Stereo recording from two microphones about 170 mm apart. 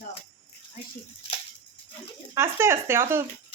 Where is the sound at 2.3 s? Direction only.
15° right (ahead or behind).